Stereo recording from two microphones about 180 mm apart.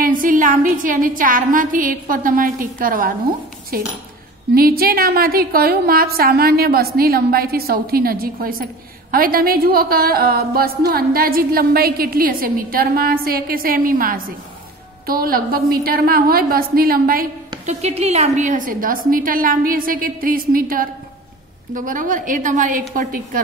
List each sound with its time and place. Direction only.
0.0 s a woman's voice: 50° right (ahead or behind)
17.6 s a woman's voice: 35° right (ahead or behind)